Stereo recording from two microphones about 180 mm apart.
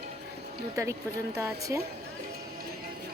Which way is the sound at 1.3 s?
15° right (ahead or behind).